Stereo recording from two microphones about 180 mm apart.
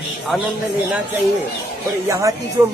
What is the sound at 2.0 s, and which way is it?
Speech, 15° right (ahead or behind).